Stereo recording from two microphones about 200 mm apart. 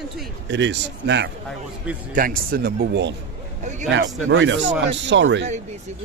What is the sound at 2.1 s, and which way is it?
Speech, 45° right (ahead or behind).